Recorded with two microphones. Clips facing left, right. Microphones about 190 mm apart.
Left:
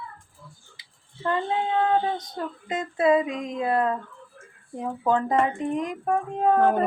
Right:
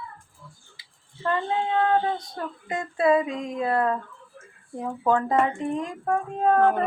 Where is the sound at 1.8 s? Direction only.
20° left (ahead or behind).